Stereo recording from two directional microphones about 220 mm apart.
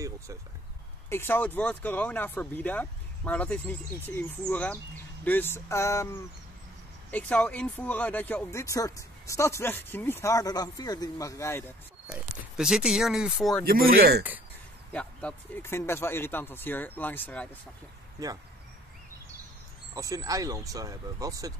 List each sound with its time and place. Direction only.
1.1 s speech: 10° left (ahead or behind)
7.1 s speech: 5° left (ahead or behind)
12.5 s speech: 5° right (ahead or behind)
13.7 s speech: 40° right (ahead or behind)
14.9 s speech: 5° left (ahead or behind)
19.9 s speech: 15° right (ahead or behind)